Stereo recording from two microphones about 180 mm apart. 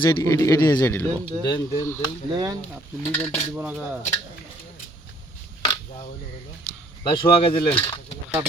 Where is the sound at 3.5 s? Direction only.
10° right (ahead or behind).